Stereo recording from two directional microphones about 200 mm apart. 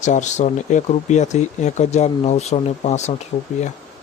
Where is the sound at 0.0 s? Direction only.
35° left (ahead or behind).